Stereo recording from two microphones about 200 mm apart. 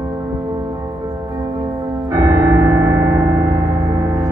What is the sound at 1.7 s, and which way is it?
Piano, 15° right (ahead or behind).